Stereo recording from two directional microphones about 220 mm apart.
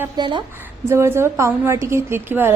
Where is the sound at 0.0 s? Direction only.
20° right (ahead or behind).